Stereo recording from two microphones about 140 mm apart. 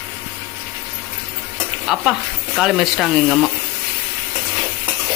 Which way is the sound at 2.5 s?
Centre (ahead or behind).